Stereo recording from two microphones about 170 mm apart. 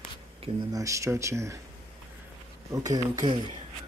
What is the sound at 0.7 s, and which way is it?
Speech, 20° right (ahead or behind).